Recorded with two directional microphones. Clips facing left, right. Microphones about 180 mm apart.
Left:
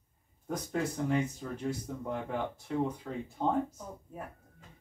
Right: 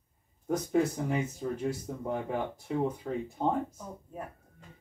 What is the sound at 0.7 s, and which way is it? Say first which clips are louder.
Speech: right 3 dB; 10° right (ahead or behind).